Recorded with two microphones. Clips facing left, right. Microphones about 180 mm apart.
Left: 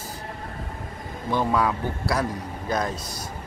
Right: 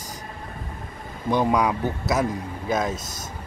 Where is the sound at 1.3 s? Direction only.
15° right (ahead or behind).